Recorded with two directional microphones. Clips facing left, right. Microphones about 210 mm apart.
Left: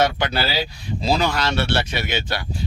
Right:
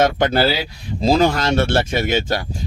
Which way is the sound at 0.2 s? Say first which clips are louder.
Right 6 dB; 45° right (ahead or behind).